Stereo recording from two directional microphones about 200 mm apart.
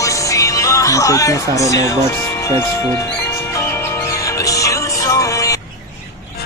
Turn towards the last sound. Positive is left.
turn(degrees=15)  # may be behind; listen again after turning